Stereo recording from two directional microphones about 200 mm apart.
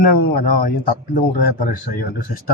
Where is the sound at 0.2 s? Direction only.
45° left (ahead or behind).